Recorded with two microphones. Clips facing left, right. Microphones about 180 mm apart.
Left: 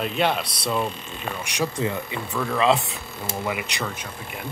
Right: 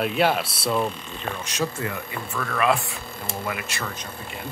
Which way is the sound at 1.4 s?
15° left (ahead or behind).